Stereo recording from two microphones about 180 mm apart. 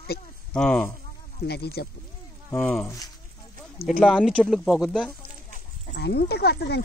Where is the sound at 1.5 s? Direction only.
65° left (ahead or behind).